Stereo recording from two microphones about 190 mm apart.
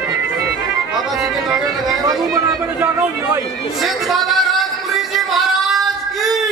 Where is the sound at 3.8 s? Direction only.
Centre (ahead or behind).